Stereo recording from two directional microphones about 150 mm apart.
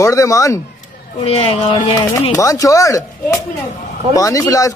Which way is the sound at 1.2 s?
40° left (ahead or behind).